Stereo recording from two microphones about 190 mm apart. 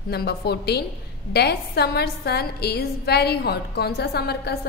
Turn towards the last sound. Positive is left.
turn(degrees=60)  # may be behind; listen again after turning